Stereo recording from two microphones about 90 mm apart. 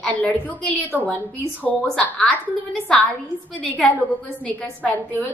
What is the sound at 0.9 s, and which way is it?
Speech, 15° right (ahead or behind).